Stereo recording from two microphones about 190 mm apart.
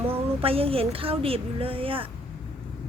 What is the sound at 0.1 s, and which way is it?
Speech, 30° right (ahead or behind).